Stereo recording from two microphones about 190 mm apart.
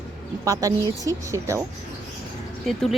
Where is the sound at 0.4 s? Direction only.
15° right (ahead or behind).